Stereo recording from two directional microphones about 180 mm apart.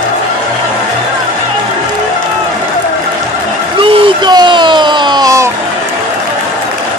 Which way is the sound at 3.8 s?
30° right (ahead or behind).